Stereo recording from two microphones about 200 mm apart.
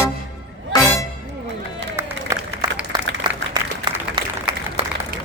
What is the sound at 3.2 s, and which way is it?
Applause, 20° right (ahead or behind).